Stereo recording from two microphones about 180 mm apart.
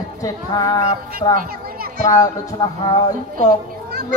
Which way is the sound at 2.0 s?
20° left (ahead or behind).